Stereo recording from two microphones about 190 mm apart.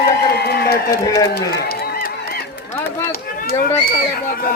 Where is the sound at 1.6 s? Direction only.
55° left (ahead or behind).